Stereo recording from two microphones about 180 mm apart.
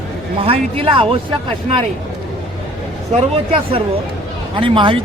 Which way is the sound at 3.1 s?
35° right (ahead or behind).